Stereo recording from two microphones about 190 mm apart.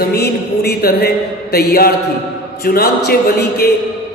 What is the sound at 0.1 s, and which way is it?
Music, 55° left (ahead or behind).